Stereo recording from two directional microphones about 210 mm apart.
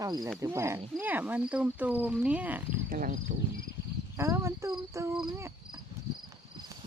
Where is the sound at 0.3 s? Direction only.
15° right (ahead or behind).